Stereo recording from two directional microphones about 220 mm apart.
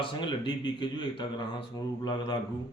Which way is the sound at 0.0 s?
20° left (ahead or behind).